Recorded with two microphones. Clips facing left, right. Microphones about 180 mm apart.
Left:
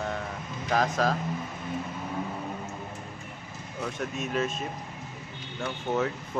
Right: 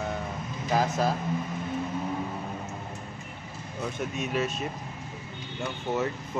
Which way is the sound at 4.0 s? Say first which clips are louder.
Even; 5° right (ahead or behind).